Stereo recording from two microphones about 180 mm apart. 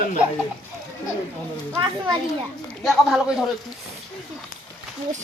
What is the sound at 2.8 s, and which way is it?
Speech, centre (ahead or behind).